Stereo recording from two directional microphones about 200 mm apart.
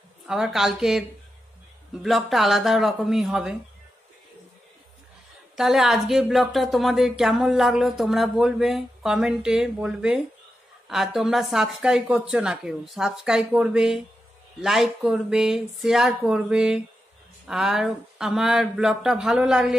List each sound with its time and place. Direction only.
0.3 s a woman's voice: centre (ahead or behind)
2.0 s a woman's voice: centre (ahead or behind)
5.6 s a woman's voice: centre (ahead or behind)